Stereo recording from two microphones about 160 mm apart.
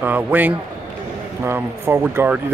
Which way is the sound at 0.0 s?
10° right (ahead or behind).